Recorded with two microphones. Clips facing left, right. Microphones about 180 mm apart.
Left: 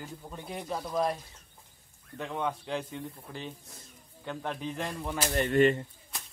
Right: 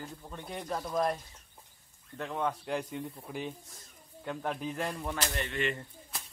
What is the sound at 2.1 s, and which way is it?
Speech, centre (ahead or behind).